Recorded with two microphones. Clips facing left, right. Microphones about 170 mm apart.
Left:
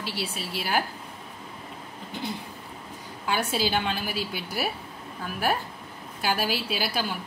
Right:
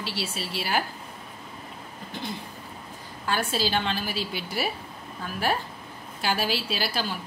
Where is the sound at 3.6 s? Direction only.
10° left (ahead or behind).